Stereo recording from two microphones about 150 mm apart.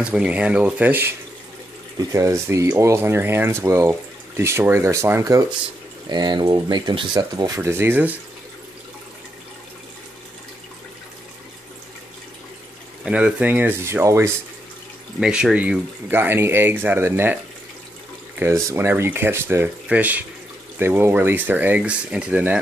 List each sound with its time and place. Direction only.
0.0 s speech: 5° right (ahead or behind)
13.0 s speech: 10° right (ahead or behind)
15.1 s speech: 5° right (ahead or behind)